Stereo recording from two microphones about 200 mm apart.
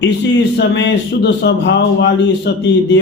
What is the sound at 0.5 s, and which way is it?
Speech, 60° left (ahead or behind).